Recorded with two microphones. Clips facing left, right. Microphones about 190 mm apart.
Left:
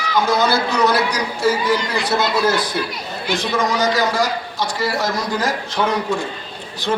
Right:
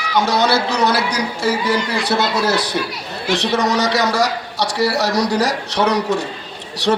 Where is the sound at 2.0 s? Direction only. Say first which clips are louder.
Left 2 dB; 70° right (ahead or behind).